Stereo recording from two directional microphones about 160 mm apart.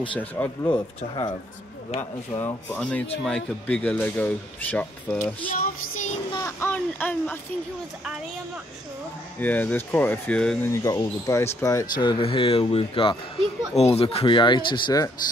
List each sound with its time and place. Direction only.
0.2 s speech: 10° left (ahead or behind)
0.7 s speech: 25° left (ahead or behind)
2.0 s speech: 15° left (ahead or behind)
5.5 s child singing: 55° left (ahead or behind)
6.3 s speech: 15° left (ahead or behind)
9.4 s speech: 10° left (ahead or behind)
10.7 s speech: 20° left (ahead or behind)
12.0 s speech: 30° left (ahead or behind)